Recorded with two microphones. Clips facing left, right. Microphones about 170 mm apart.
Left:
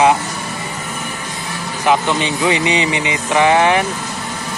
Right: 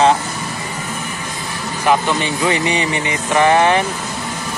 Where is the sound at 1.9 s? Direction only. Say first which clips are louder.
Left 1 dB; 20° left (ahead or behind).